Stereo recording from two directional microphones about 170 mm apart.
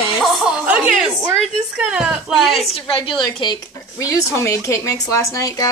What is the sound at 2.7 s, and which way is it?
A woman's voice, 30° left (ahead or behind).